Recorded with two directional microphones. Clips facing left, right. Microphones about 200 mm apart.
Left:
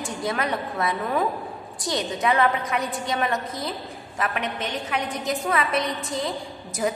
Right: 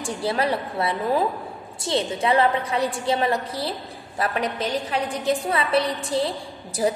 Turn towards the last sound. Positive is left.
turn(degrees=-30)  # may be behind; listen again after turning